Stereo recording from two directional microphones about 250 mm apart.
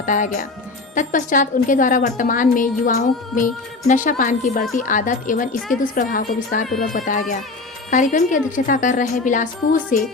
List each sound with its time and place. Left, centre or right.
0.0 s a woman's voice: left